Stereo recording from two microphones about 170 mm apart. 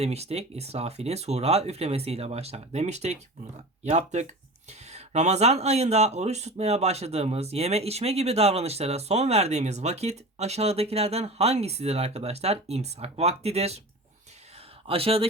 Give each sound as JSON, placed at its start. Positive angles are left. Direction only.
{"t": 0.0, "sound": "speech", "side_deg": -40}
{"t": 14.8, "sound": "speech", "side_deg": -35}